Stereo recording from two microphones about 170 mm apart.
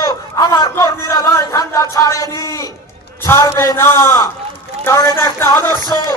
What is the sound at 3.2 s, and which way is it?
A man's voice, 15° left (ahead or behind).